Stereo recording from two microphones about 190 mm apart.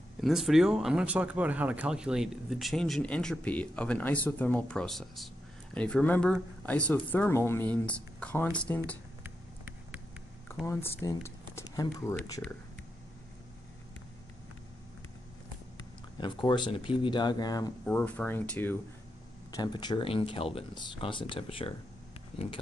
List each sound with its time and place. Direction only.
0.2 s speech: centre (ahead or behind)
10.7 s speech: 10° left (ahead or behind)
16.2 s speech: 25° left (ahead or behind)
17.8 s speech: 10° left (ahead or behind)
19.5 s speech: 20° left (ahead or behind)